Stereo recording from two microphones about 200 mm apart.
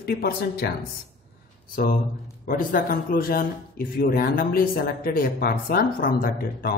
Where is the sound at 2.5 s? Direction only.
45° left (ahead or behind).